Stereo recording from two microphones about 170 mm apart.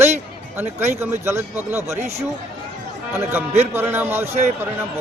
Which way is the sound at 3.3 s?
10° right (ahead or behind).